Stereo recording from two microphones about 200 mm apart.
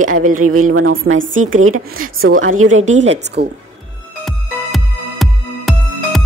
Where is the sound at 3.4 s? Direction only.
55° right (ahead or behind).